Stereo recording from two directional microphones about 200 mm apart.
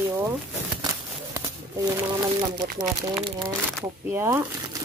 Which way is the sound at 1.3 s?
20° right (ahead or behind).